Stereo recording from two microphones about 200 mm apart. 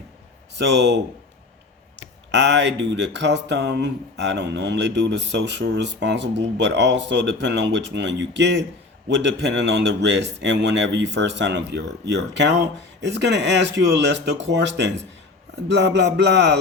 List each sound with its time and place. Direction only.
0.5 s speech: 60° right (ahead or behind)
2.3 s speech: 60° right (ahead or behind)